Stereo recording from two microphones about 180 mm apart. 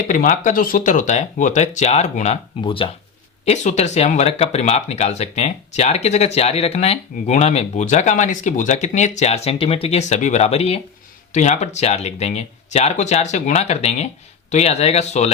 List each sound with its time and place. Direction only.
0.1 s speech: 45° left (ahead or behind)